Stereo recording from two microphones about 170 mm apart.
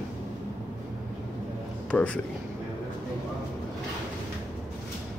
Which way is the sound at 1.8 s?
5° left (ahead or behind).